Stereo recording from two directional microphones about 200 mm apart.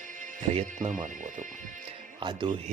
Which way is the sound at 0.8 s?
40° right (ahead or behind).